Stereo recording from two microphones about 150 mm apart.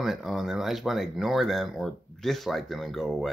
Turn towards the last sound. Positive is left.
turn(degrees=0)  # may be behind; listen again after turning